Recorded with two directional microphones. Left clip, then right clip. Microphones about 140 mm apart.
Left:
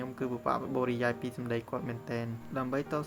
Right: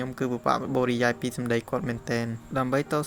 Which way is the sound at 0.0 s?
30° right (ahead or behind).